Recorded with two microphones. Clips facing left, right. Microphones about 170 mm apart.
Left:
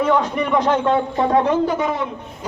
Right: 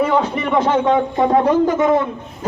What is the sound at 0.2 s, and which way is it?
Speech, 5° right (ahead or behind).